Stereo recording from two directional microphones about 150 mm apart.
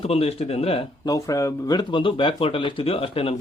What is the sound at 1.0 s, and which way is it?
Speech, 25° left (ahead or behind).